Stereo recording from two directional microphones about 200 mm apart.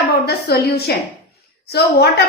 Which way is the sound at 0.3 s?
55° left (ahead or behind).